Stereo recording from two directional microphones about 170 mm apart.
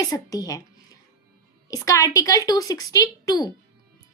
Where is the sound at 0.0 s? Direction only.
20° left (ahead or behind).